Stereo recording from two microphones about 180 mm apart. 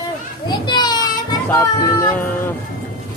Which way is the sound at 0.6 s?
25° left (ahead or behind).